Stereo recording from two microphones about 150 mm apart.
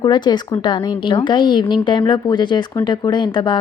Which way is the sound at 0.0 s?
30° left (ahead or behind).